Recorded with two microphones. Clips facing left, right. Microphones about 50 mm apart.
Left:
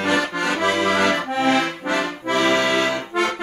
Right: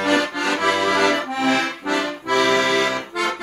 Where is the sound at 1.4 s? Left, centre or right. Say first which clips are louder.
Left 1 dB; left.